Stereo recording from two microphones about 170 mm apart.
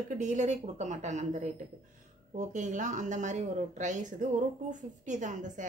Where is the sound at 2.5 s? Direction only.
45° right (ahead or behind).